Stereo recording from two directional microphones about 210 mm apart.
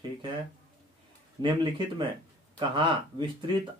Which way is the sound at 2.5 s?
20° right (ahead or behind).